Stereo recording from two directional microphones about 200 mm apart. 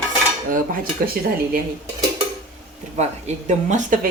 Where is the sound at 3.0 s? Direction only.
35° right (ahead or behind).